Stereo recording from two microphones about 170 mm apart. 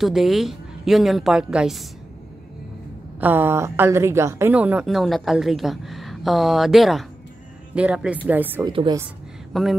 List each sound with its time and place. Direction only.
0.0 s a woman's voice: centre (ahead or behind)
3.2 s a woman's voice: 10° right (ahead or behind)
8.6 s a woman's voice: 25° right (ahead or behind)
9.5 s speech: centre (ahead or behind)